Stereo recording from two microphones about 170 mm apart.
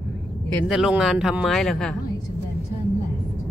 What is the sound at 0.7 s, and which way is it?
Speech, 5° right (ahead or behind).